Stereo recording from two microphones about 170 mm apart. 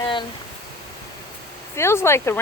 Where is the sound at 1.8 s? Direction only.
15° left (ahead or behind).